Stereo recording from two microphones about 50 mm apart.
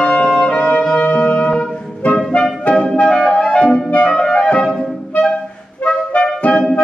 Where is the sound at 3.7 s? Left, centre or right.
Centre.